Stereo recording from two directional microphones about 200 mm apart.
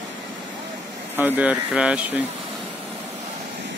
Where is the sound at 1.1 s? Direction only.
10° right (ahead or behind).